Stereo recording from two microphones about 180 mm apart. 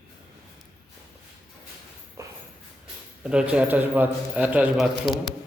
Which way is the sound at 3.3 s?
5° right (ahead or behind).